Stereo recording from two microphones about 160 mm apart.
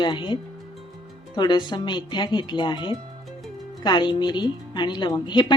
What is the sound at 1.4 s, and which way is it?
A woman's voice, 30° left (ahead or behind).